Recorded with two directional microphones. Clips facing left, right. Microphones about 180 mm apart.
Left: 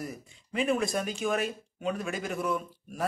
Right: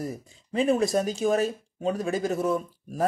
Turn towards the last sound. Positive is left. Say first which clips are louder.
# right 6 dB
turn(degrees=-35)  # may be behind; listen again after turning